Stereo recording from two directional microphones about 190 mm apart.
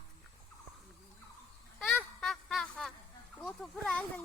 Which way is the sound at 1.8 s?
5° left (ahead or behind).